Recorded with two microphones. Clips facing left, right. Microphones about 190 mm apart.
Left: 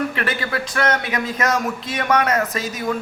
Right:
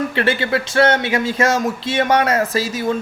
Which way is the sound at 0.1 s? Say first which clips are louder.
Right 6 dB; 30° right (ahead or behind).